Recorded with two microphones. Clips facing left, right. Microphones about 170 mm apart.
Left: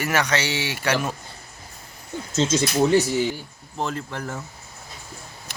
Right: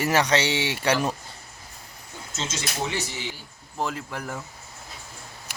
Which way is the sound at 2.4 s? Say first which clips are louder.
Left 11 dB; 40° left (ahead or behind).